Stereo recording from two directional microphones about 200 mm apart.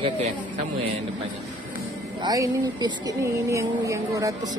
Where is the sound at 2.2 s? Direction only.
20° right (ahead or behind).